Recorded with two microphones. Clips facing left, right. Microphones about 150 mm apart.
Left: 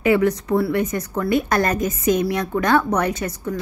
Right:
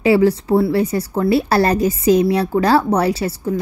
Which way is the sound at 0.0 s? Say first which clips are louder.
Right 4 dB; 30° right (ahead or behind).